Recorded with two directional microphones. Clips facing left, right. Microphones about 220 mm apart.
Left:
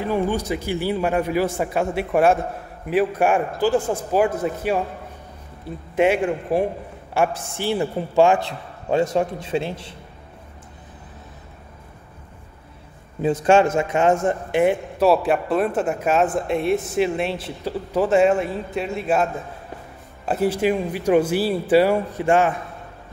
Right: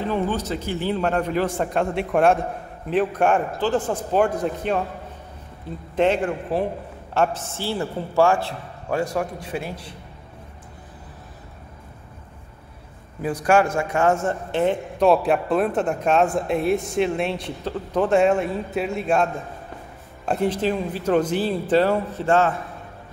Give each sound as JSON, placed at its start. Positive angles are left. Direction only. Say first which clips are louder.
{"t": 0.0, "sound": "speech", "louder": "left 2 dB", "side_deg": 10}
{"t": 5.9, "sound": "a man's voice", "louder": "left 2 dB", "side_deg": 10}
{"t": 13.2, "sound": "a man's voice", "louder": "left 3 dB", "side_deg": 25}
{"t": 20.2, "sound": "speech", "louder": "left 2 dB", "side_deg": 5}